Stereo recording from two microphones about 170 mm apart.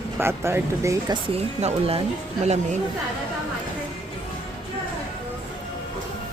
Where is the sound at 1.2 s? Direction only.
35° right (ahead or behind).